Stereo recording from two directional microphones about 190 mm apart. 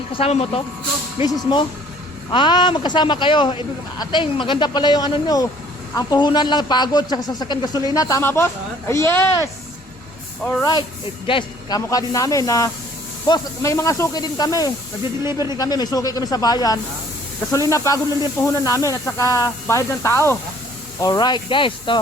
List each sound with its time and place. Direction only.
0.1 s speech: 30° left (ahead or behind); by 9.5 s 15° left (ahead or behind)
10.6 s speech: 20° left (ahead or behind)